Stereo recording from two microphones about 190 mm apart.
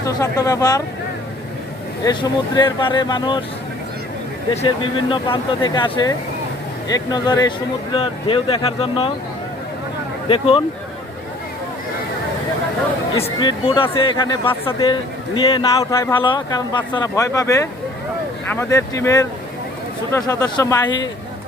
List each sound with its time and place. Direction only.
0.0 s speech: 20° left (ahead or behind)
2.0 s speech: 20° left (ahead or behind)
4.5 s speech: 30° left (ahead or behind)
10.2 s speech: 30° left (ahead or behind)
13.1 s speech: 25° left (ahead or behind)